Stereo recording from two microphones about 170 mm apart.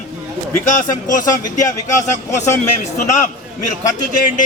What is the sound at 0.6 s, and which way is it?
Speech, 50° left (ahead or behind).